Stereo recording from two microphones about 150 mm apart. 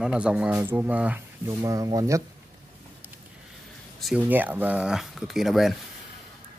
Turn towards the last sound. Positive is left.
turn(degrees=0)  # may be behind; listen again after turning